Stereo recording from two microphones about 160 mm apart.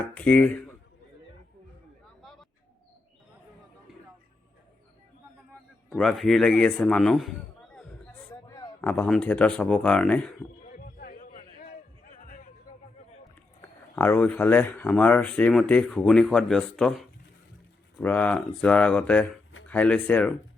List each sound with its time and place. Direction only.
0.0 s speech: 10° left (ahead or behind)
2.2 s bird: centre (ahead or behind)
6.0 s a man's voice: 5° left (ahead or behind)
8.4 s a sound: 20° left (ahead or behind)
8.8 s speech: 10° left (ahead or behind)
10.7 s music: 70° left (ahead or behind)
13.9 s speech: 10° left (ahead or behind)